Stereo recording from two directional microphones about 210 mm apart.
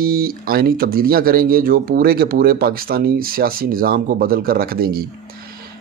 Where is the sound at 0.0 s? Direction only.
45° right (ahead or behind).